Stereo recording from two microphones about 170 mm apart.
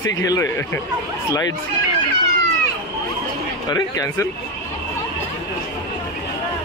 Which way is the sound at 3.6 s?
20° left (ahead or behind).